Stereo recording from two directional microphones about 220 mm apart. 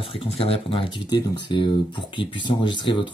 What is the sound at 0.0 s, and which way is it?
Speech, 25° left (ahead or behind).